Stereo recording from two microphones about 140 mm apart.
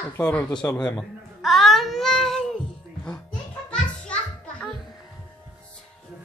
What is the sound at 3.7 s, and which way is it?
Music, 10° left (ahead or behind).